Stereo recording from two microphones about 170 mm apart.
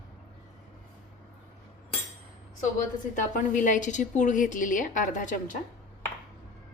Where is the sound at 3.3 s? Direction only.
50° left (ahead or behind).